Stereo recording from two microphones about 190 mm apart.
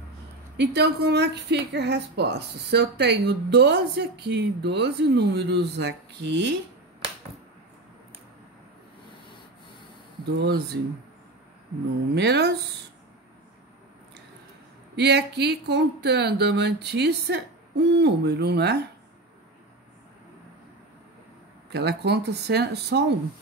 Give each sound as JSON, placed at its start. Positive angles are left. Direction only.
{"t": 0.6, "sound": "a woman's voice", "side_deg": -60}
{"t": 10.4, "sound": "a woman's voice", "side_deg": -60}
{"t": 12.1, "sound": "a woman's voice", "side_deg": -60}
{"t": 15.0, "sound": "a woman's voice", "side_deg": -60}
{"t": 21.7, "sound": "a woman's voice", "side_deg": -60}